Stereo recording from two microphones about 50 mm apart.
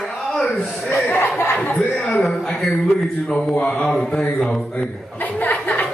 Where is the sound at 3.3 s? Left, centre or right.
Left.